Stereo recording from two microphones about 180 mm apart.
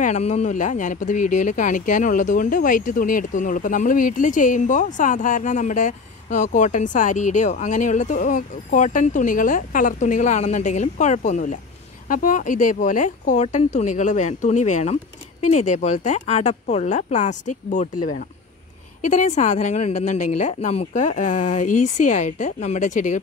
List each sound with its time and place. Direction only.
0.0 s speech: 40° left (ahead or behind)